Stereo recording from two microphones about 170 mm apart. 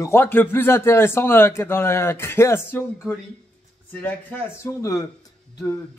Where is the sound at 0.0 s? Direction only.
15° left (ahead or behind).